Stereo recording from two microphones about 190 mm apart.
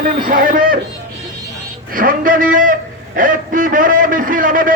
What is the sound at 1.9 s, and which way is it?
A man's voice, 50° right (ahead or behind).